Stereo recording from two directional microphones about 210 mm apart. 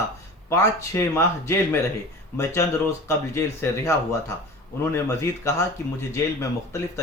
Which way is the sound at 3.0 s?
15° left (ahead or behind).